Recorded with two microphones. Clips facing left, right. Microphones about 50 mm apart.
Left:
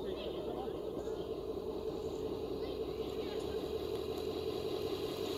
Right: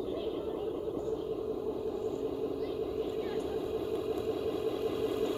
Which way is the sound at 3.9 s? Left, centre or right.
Right.